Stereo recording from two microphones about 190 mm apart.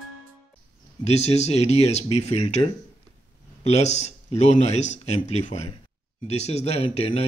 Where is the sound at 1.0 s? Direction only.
35° left (ahead or behind).